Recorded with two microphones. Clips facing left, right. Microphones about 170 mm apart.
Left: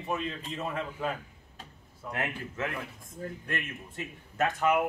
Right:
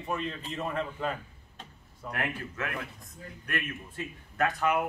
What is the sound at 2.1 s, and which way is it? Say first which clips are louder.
A man's voice: even; 25° left (ahead or behind).